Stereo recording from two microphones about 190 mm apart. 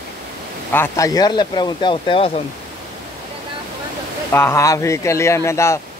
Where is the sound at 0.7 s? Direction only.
15° left (ahead or behind).